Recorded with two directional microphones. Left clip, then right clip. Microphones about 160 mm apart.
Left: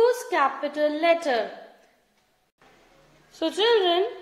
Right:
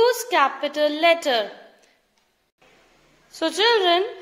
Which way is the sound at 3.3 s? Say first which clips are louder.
Right 2 dB; 15° right (ahead or behind).